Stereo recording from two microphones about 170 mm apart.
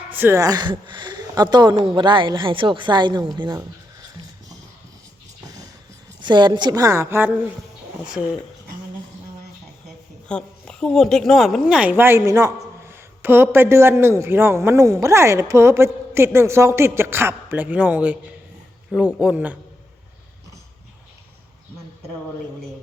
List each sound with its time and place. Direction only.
0.1 s speech: 10° right (ahead or behind)
4.0 s a sound: 20° right (ahead or behind)
6.2 s speech: 25° right (ahead or behind); by 8.4 s 5° right (ahead or behind)
10.2 s a woman's voice: 5° left (ahead or behind)